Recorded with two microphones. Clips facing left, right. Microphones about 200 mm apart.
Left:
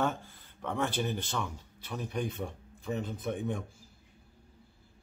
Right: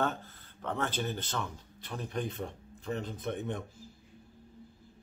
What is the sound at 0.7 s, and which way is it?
Speech, 10° left (ahead or behind).